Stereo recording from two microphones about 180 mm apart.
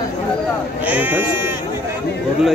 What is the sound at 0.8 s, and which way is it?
Speech, 10° right (ahead or behind).